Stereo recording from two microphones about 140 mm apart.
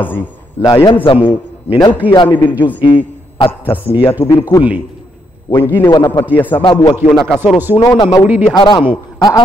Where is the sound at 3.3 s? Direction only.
40° left (ahead or behind).